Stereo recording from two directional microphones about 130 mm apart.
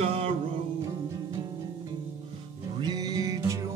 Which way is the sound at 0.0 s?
50° right (ahead or behind).